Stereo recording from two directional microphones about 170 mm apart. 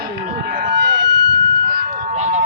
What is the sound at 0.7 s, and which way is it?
Emergency vehicle, 90° right.